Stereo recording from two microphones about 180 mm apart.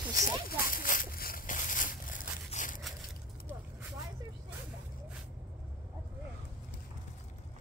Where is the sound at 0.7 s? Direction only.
50° left (ahead or behind).